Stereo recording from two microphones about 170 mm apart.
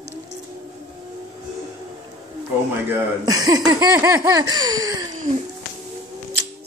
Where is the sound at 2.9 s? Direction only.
20° right (ahead or behind).